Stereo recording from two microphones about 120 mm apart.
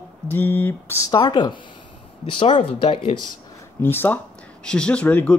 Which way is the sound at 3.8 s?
15° left (ahead or behind).